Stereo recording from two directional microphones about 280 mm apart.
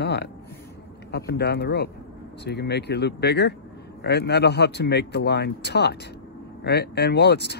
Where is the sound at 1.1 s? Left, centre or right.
Left.